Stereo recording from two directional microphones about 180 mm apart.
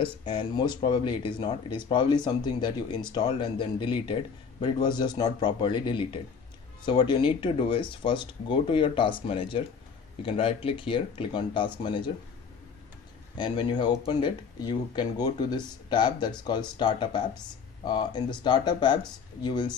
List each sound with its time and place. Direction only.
0.0 s speech: 30° left (ahead or behind)
13.4 s speech: 25° left (ahead or behind)